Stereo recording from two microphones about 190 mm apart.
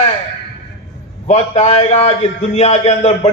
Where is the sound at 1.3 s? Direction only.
35° left (ahead or behind).